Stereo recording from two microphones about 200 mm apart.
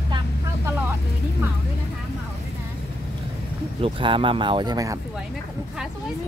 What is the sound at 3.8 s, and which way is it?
Speech, 25° right (ahead or behind).